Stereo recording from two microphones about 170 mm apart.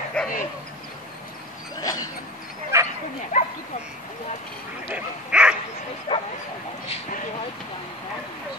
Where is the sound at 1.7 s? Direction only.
20° left (ahead or behind).